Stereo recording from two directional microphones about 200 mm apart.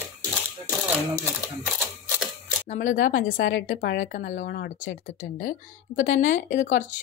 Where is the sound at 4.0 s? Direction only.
40° left (ahead or behind).